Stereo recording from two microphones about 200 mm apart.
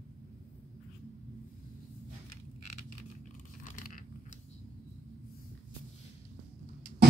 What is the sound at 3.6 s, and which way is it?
Biting, 40° left (ahead or behind).